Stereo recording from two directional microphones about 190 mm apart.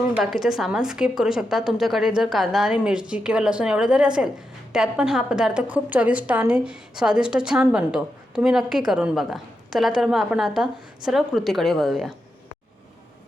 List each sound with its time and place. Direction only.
0.2 s a woman's voice: centre (ahead or behind)